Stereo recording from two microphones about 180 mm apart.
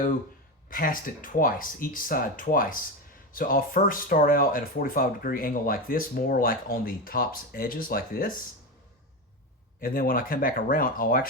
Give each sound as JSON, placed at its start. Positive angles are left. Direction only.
{"t": 0.7, "sound": "speech", "side_deg": 50}
{"t": 9.8, "sound": "speech", "side_deg": 50}